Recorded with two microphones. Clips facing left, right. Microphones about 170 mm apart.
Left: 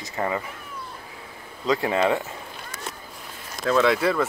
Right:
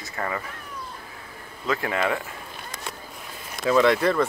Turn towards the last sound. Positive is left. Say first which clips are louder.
# right 1 dB
turn(degrees=0)  # may be behind; listen again after turning